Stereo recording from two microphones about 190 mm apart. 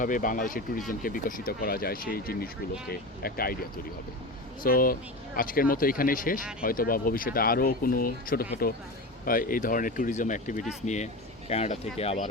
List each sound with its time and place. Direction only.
0.0 s speech: 45° left (ahead or behind)